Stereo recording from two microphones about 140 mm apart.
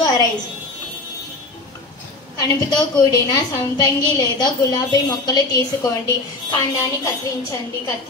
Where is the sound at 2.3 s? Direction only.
30° left (ahead or behind).